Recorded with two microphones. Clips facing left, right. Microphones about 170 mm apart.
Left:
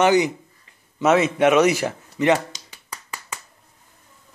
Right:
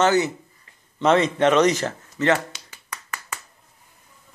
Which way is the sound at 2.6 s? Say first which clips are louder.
Right 1 dB; 15° left (ahead or behind).